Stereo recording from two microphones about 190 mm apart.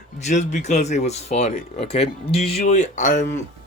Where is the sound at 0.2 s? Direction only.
40° left (ahead or behind).